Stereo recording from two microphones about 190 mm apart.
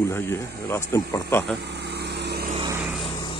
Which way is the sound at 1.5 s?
60° right (ahead or behind).